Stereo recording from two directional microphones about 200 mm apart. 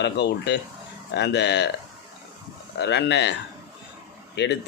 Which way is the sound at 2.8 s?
60° left (ahead or behind).